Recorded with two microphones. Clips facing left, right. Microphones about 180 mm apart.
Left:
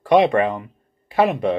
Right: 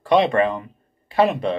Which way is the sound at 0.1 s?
15° left (ahead or behind).